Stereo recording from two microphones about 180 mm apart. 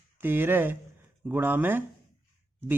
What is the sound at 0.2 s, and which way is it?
Speech, 10° right (ahead or behind).